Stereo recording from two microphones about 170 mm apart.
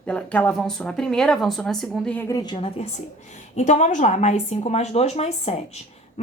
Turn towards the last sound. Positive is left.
turn(degrees=40)  # may be behind; listen again after turning